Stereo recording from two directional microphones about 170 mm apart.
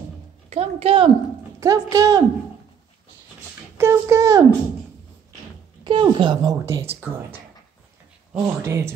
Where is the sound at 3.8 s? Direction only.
15° right (ahead or behind).